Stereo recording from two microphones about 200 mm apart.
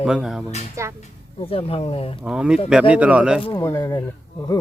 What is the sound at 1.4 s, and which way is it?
Speech, 30° left (ahead or behind).